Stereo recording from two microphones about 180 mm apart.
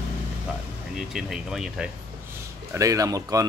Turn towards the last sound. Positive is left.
turn(degrees=-20)  # may be behind; listen again after turning